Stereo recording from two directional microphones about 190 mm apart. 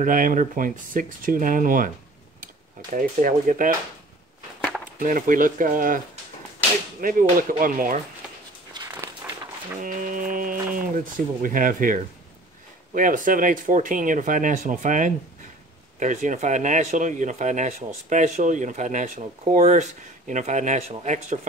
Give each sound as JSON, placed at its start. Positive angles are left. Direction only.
{"t": 0.0, "sound": "speech", "side_deg": -45}
{"t": 4.9, "sound": "speech", "side_deg": -45}
{"t": 8.7, "sound": "a sound", "side_deg": -15}
{"t": 9.8, "sound": "speech", "side_deg": -45}